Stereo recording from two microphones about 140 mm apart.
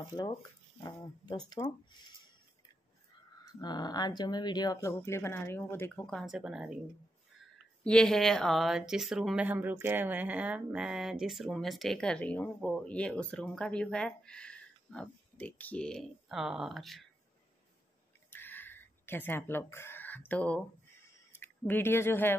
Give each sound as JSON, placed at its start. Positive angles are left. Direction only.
{"t": 0.8, "sound": "speech", "side_deg": 30}
{"t": 3.5, "sound": "speech", "side_deg": 30}
{"t": 6.0, "sound": "speech", "side_deg": 0}
{"t": 7.8, "sound": "speech", "side_deg": 5}
{"t": 18.3, "sound": "chicken", "side_deg": 15}
{"t": 21.4, "sound": "speech", "side_deg": 15}